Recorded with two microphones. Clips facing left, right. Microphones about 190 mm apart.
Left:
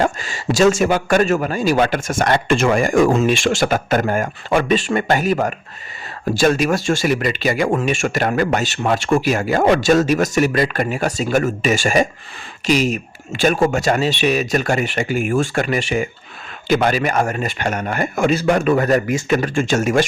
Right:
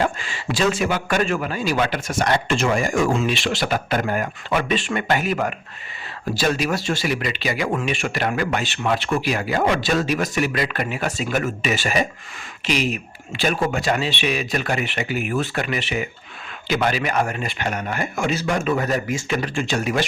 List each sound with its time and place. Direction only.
0.0 s speech: 40° left (ahead or behind)